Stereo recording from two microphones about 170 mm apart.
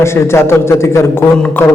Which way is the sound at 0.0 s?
15° left (ahead or behind).